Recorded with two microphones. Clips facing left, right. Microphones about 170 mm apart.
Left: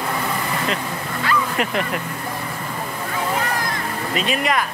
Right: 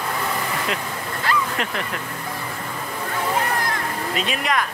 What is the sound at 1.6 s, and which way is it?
Speech, 10° left (ahead or behind).